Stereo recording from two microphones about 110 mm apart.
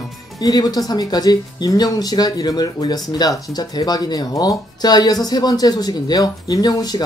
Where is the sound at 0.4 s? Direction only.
35° left (ahead or behind).